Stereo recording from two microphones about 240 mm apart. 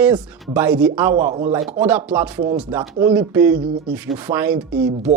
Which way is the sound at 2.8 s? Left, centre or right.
Right.